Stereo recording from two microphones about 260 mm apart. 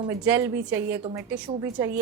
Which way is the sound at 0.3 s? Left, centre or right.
Centre.